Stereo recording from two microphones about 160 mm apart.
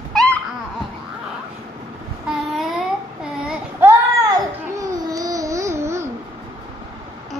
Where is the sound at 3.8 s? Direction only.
20° right (ahead or behind).